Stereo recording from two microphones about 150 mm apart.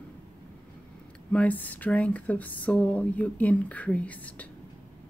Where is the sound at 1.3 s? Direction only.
10° left (ahead or behind).